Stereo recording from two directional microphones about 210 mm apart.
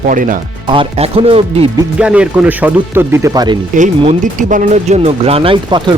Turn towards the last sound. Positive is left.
turn(degrees=-25)  # may be behind; listen again after turning